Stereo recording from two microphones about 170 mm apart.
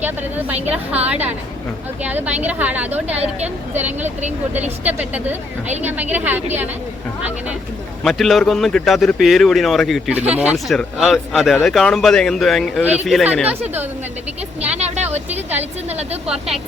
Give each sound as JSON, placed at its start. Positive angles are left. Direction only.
{"t": 0.0, "sound": "a woman's voice", "side_deg": -10}
{"t": 2.0, "sound": "a woman's voice", "side_deg": -10}
{"t": 8.0, "sound": "speech", "side_deg": 0}
{"t": 12.8, "sound": "a woman's voice", "side_deg": -10}
{"t": 14.6, "sound": "speech", "side_deg": -40}
{"t": 15.3, "sound": "a woman's voice", "side_deg": -10}
{"t": 15.9, "sound": "speech", "side_deg": -40}